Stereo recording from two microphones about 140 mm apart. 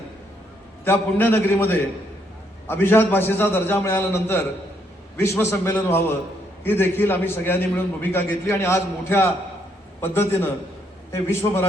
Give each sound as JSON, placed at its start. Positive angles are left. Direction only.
{"t": 0.9, "sound": "a man's voice", "side_deg": 15}